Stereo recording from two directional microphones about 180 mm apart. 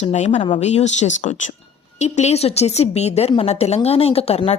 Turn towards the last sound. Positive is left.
turn(degrees=35)  # may be behind; listen again after turning